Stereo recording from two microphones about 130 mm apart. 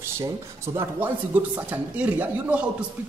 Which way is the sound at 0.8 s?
15° right (ahead or behind).